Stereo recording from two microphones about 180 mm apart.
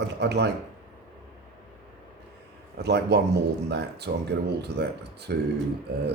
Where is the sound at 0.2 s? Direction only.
70° right (ahead or behind).